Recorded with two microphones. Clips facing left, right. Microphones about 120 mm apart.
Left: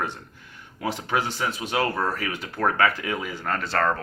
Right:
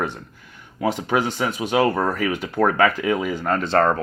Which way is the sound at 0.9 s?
20° right (ahead or behind).